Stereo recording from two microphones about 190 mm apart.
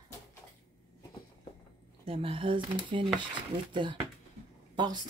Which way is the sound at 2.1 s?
30° right (ahead or behind).